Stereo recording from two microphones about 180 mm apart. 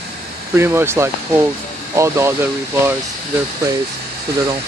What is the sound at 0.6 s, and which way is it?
Speech, 15° right (ahead or behind).